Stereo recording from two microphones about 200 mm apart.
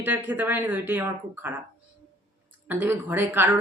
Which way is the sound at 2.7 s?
10° right (ahead or behind).